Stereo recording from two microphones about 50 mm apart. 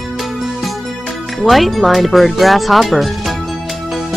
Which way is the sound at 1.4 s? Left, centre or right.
Centre.